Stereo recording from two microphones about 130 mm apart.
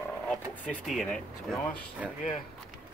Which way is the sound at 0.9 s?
Centre (ahead or behind).